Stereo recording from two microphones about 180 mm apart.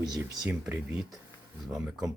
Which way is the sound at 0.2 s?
10° right (ahead or behind).